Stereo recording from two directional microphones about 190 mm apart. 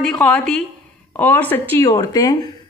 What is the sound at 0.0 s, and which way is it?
A woman's voice, 5° left (ahead or behind).